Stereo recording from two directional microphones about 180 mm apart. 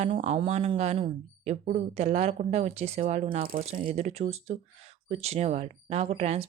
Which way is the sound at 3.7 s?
30° right (ahead or behind).